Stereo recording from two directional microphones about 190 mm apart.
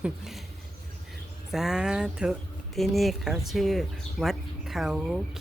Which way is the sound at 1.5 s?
5° right (ahead or behind).